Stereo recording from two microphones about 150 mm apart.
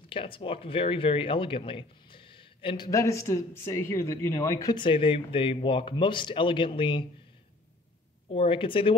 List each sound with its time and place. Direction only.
0.1 s speech: 35° left (ahead or behind)
2.9 s speech: 20° left (ahead or behind)
8.3 s speech: 35° left (ahead or behind)